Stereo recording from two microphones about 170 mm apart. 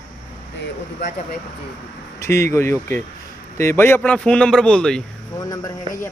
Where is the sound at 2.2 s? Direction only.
15° left (ahead or behind).